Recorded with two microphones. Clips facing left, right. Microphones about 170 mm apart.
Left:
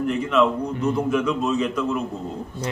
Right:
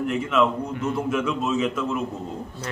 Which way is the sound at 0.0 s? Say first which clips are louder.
Left 2 dB; 5° right (ahead or behind).